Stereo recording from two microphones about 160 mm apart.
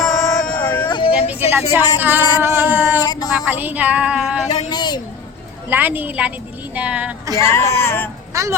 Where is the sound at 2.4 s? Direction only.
15° right (ahead or behind).